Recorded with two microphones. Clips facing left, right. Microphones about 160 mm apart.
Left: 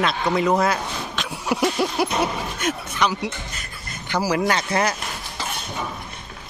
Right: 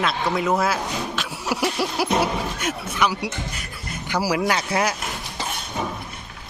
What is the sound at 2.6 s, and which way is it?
Speech, 10° right (ahead or behind).